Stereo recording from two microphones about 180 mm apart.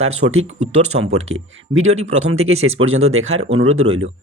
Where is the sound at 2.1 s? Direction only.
35° right (ahead or behind).